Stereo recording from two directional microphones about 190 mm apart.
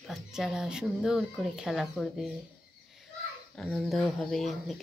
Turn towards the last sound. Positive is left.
turn(degrees=0)  # may be behind; listen again after turning